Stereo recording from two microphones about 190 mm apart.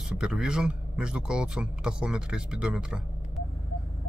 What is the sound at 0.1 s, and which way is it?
Speech, 5° right (ahead or behind).